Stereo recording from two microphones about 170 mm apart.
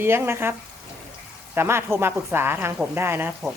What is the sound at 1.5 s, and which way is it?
A woman's voice, 15° right (ahead or behind).